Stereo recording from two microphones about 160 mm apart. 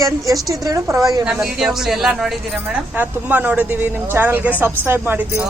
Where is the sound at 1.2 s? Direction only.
5° right (ahead or behind).